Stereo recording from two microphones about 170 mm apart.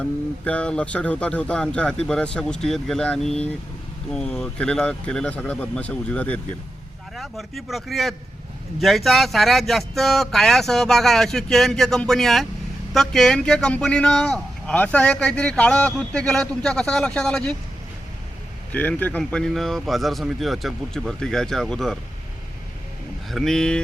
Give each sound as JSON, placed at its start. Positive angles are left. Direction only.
{"t": 0.0, "sound": "speech", "side_deg": 5}
{"t": 18.7, "sound": "speech", "side_deg": 10}
{"t": 23.3, "sound": "speech", "side_deg": 5}